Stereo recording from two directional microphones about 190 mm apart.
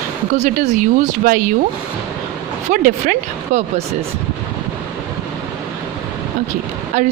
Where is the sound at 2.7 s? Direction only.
40° right (ahead or behind).